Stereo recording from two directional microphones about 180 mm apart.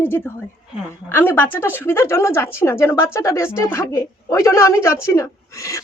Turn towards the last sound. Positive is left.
turn(degrees=15)  # may be behind; listen again after turning